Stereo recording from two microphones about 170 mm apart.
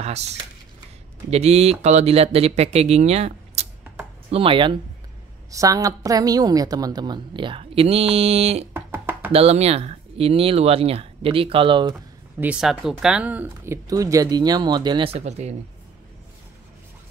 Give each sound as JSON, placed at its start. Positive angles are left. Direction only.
{"t": 1.3, "sound": "speech", "side_deg": -40}
{"t": 5.5, "sound": "a woman's voice", "side_deg": -20}
{"t": 8.7, "sound": "music", "side_deg": -10}
{"t": 9.3, "sound": "speech", "side_deg": -35}
{"t": 12.4, "sound": "a woman's voice", "side_deg": -5}
{"t": 15.1, "sound": "speech", "side_deg": -40}